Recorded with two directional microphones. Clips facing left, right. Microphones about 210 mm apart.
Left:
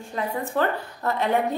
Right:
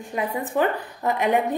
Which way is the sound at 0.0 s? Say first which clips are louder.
Right 1 dB; 15° right (ahead or behind).